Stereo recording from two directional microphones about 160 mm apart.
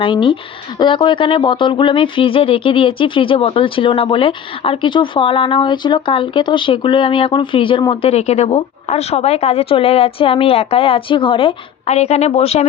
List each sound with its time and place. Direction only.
0.0 s speech: 30° left (ahead or behind)
8.1 s speech: 40° left (ahead or behind)